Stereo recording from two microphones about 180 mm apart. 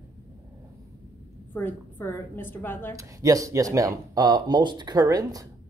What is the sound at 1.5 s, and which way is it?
A woman's voice, 10° left (ahead or behind).